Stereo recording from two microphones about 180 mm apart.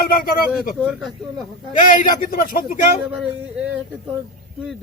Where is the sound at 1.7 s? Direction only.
45° left (ahead or behind).